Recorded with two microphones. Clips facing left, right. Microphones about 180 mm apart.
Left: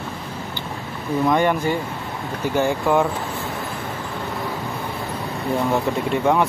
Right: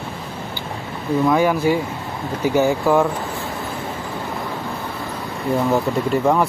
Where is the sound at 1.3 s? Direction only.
5° right (ahead or behind).